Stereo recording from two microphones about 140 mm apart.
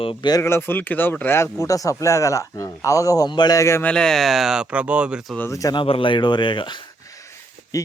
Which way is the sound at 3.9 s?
5° left (ahead or behind).